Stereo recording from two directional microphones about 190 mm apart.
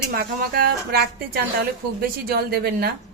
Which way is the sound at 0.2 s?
55° right (ahead or behind).